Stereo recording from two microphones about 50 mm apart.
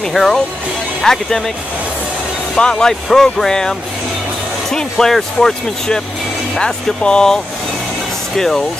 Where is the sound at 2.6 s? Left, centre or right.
Centre.